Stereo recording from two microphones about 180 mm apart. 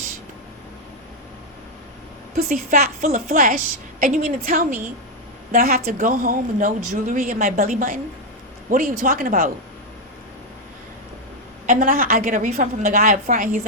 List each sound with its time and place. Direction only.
2.3 s speech: 50° right (ahead or behind)
11.6 s speech: 50° right (ahead or behind)